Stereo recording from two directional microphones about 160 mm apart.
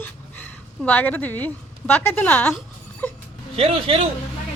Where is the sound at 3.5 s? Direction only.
35° right (ahead or behind).